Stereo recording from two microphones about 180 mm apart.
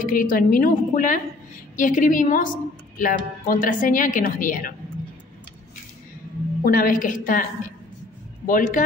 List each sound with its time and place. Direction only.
0.0 s a woman's voice: 50° left (ahead or behind)
6.6 s a woman's voice: 50° left (ahead or behind)
8.5 s a woman's voice: 50° left (ahead or behind)